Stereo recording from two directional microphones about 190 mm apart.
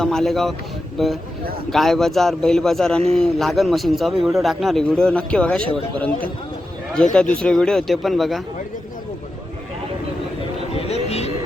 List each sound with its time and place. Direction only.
0.0 s a man's voice: centre (ahead or behind)
10.8 s vehicle: 35° left (ahead or behind)